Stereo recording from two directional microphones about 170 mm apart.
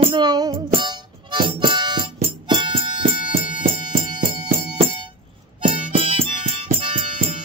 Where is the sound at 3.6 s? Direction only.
55° right (ahead or behind).